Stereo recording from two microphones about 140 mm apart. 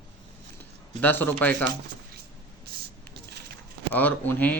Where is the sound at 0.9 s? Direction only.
15° left (ahead or behind).